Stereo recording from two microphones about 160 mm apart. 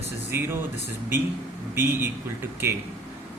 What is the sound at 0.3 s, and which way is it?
Speech, 15° right (ahead or behind).